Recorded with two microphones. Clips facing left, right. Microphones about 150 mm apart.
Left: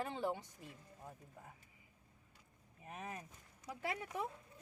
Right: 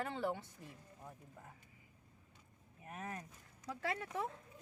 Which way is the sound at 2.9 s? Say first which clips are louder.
Right 1 dB; 20° left (ahead or behind).